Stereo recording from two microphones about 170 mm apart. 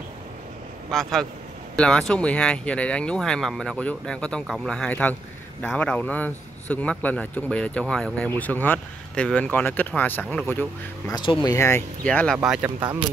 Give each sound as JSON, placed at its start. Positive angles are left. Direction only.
{"t": 0.9, "sound": "speech", "side_deg": 5}
{"t": 11.1, "sound": "speech", "side_deg": 25}
{"t": 12.4, "sound": "speech", "side_deg": -5}